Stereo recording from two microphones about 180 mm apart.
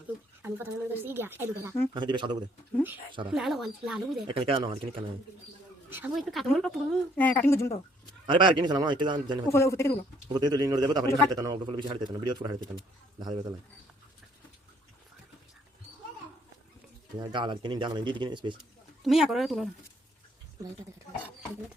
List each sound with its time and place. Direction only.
0.4 s a woman's voice: 10° right (ahead or behind)
1.9 s speech: 25° right (ahead or behind)
3.3 s speech: centre (ahead or behind)
4.3 s speech: 30° right (ahead or behind)
5.9 s a woman's voice: 10° right (ahead or behind)
6.1 s speech: centre (ahead or behind); by 7.8 s 15° left (ahead or behind)
8.3 s speech: 25° right (ahead or behind)
9.5 s speech: 15° left (ahead or behind)
10.2 s speech: 25° right (ahead or behind)
17.2 s speech: 25° right (ahead or behind)
19.0 s speech: centre (ahead or behind)